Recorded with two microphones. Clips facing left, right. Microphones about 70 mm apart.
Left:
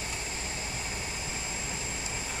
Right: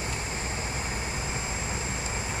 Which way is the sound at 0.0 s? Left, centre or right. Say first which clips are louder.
Right 4 dB; right.